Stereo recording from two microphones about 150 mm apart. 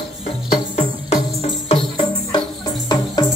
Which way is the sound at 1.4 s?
35° left (ahead or behind).